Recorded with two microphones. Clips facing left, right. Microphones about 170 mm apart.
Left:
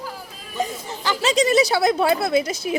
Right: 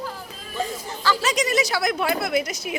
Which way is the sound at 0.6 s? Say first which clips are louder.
Left 1 dB; 20° left (ahead or behind).